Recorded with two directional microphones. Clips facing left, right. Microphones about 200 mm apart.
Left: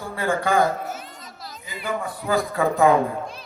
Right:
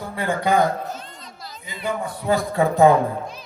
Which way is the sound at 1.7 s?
Centre (ahead or behind).